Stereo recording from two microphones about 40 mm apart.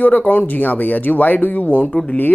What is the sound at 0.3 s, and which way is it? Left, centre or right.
Speech, left.